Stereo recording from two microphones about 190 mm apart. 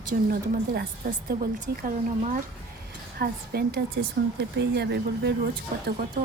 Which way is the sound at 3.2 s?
55° right (ahead or behind).